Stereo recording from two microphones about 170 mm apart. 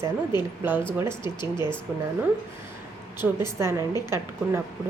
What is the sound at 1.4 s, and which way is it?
Speech, 25° left (ahead or behind).